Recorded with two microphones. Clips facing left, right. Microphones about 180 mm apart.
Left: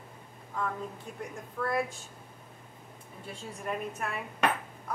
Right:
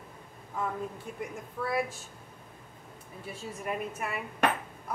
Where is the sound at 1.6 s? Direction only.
5° right (ahead or behind).